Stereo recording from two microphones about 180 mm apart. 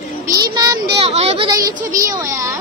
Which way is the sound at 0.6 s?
20° right (ahead or behind).